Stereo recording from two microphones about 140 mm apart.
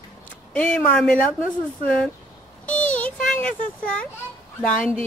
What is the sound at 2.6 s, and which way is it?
Child singing, 10° left (ahead or behind).